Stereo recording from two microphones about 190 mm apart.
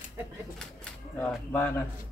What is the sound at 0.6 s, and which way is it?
Speech, 5° left (ahead or behind).